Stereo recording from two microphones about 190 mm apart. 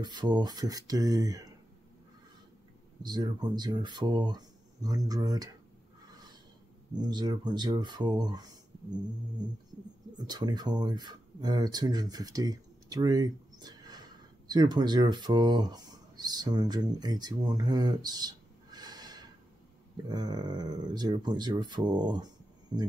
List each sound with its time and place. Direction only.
0.0 s speech: 20° right (ahead or behind)
3.0 s speech: 20° right (ahead or behind)
6.0 s a sound: 20° right (ahead or behind)
7.0 s speech: 20° right (ahead or behind)
10.2 s speech: 20° right (ahead or behind)